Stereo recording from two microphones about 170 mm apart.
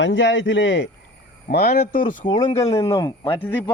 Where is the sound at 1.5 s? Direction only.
65° left (ahead or behind).